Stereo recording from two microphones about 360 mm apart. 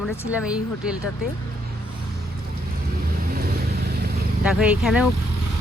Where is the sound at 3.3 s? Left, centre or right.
Right.